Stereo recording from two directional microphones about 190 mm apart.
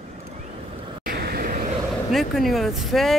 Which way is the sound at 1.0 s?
55° right (ahead or behind).